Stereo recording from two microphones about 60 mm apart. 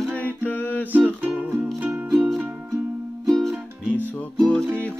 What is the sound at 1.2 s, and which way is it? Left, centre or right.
Music, right.